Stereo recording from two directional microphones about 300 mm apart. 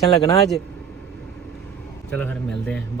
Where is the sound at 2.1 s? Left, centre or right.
Centre.